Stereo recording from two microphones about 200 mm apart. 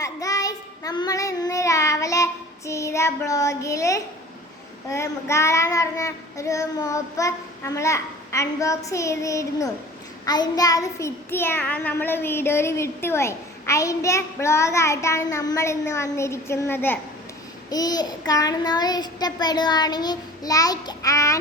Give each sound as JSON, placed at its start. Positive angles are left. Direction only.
{"t": 0.0, "sound": "child singing", "side_deg": 15}